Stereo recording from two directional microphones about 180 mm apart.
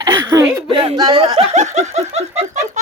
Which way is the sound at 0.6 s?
30° right (ahead or behind).